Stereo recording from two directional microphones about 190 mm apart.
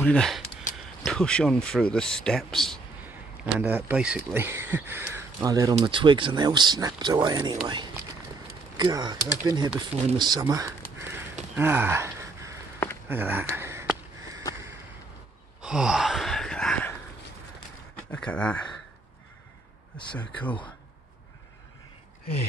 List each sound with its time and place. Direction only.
0.0 s speech: 5° left (ahead or behind)
3.5 s speech: 10° right (ahead or behind)
8.7 s speech: 20° right (ahead or behind)
11.0 s a sound: 10° right (ahead or behind)
11.5 s gasp: 10° right (ahead or behind)
13.1 s a sound: 10° right (ahead or behind)
15.6 s gasp: 5° right (ahead or behind)
18.1 s speech: 5° left (ahead or behind)
20.2 s speech: 5° left (ahead or behind)